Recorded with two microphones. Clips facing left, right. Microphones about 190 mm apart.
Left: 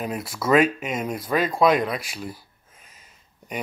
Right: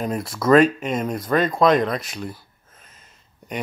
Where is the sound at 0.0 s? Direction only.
5° left (ahead or behind).